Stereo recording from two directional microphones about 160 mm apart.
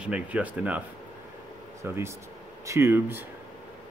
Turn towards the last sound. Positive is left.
turn(degrees=-15)  # may be behind; listen again after turning